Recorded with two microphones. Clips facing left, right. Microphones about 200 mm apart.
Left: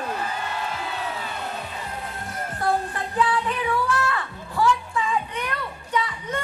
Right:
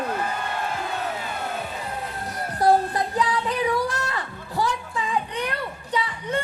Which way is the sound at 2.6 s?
35° right (ahead or behind).